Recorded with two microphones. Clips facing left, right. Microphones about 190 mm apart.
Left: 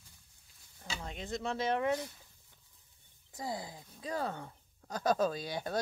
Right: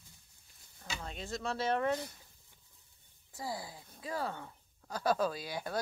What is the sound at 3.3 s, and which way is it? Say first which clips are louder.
Speech: left 1 dB; 20° left (ahead or behind).